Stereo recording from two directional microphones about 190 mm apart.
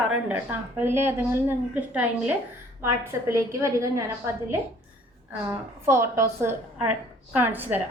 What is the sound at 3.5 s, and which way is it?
A woman's voice, 15° right (ahead or behind).